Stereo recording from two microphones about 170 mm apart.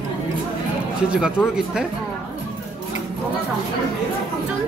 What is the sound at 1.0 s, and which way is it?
Speech, 5° right (ahead or behind).